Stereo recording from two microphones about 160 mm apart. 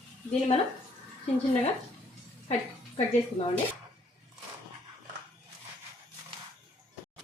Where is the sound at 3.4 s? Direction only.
40° left (ahead or behind).